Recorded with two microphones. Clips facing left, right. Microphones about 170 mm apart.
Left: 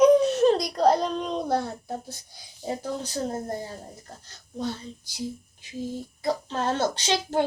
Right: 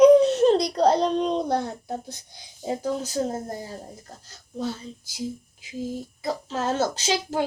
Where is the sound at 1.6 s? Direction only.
15° right (ahead or behind).